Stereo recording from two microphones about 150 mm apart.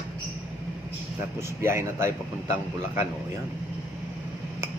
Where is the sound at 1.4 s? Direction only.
15° right (ahead or behind).